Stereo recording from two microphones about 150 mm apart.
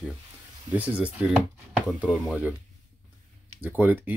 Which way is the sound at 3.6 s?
10° right (ahead or behind).